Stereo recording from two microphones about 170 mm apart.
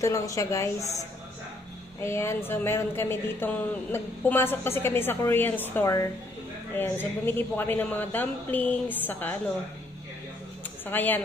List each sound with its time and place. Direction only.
0.0 s a woman's voice: 20° left (ahead or behind)
2.0 s speech: 15° left (ahead or behind)
10.9 s speech: 10° left (ahead or behind)